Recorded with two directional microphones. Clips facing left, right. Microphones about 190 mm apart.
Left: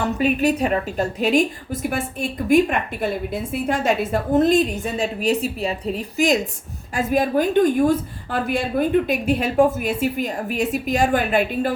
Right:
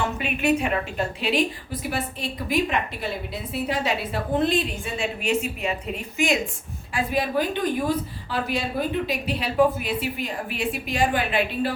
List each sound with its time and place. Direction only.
0.0 s a woman's voice: 40° left (ahead or behind)